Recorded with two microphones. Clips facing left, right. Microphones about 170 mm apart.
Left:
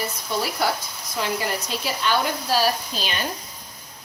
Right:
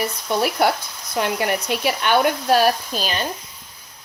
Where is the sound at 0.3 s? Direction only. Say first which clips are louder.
Right 5 dB; 60° right (ahead or behind).